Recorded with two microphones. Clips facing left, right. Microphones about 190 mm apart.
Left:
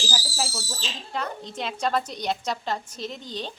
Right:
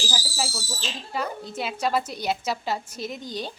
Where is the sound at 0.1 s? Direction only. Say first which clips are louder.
Even; centre (ahead or behind).